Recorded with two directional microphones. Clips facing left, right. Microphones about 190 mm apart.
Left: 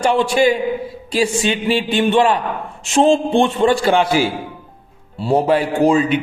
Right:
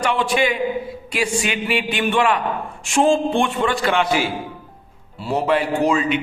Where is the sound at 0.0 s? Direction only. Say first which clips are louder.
Left 5 dB; 30° left (ahead or behind).